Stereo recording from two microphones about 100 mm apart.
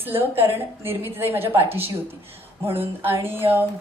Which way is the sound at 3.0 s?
20° right (ahead or behind).